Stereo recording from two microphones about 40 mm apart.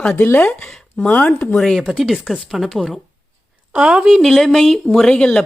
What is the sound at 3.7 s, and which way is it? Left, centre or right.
Speech, right.